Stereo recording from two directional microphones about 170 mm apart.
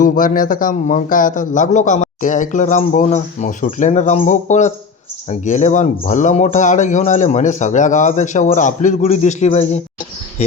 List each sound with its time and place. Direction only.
0.0 s a man's voice: 50° left (ahead or behind)